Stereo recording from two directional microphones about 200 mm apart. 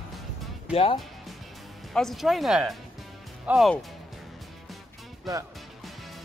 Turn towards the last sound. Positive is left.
turn(degrees=-15)  # may be behind; listen again after turning